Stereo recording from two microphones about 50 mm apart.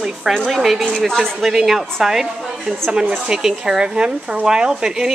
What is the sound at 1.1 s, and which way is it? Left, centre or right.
Speech, centre.